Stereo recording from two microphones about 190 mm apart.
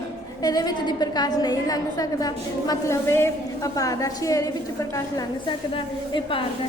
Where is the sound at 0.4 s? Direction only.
20° left (ahead or behind).